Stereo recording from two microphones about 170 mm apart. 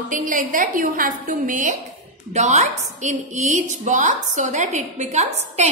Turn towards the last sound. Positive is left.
turn(degrees=-40)  # may be behind; listen again after turning